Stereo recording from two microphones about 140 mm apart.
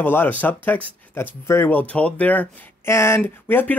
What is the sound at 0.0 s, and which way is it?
Speech, 15° left (ahead or behind).